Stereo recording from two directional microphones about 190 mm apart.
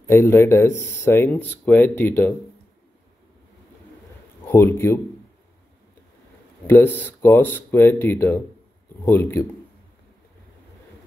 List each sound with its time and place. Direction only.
0.0 s speech: 15° left (ahead or behind)
4.5 s speech: 10° left (ahead or behind)
6.7 s speech: 10° left (ahead or behind)